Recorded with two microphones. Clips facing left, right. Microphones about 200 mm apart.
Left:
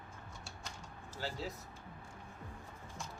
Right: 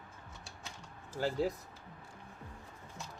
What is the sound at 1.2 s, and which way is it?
Speech, 50° right (ahead or behind).